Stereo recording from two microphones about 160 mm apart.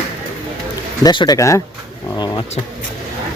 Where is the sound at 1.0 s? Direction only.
25° left (ahead or behind).